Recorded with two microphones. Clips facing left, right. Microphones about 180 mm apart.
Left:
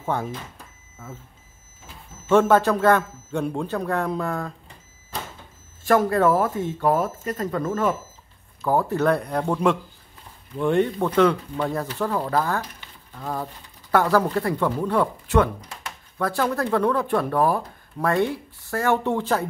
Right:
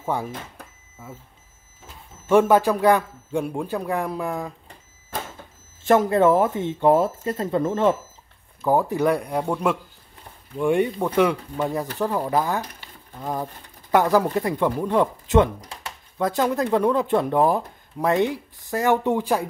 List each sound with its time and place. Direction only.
0.0 s speech: 10° right (ahead or behind)
2.2 s speech: 10° right (ahead or behind)
5.9 s speech: 20° right (ahead or behind)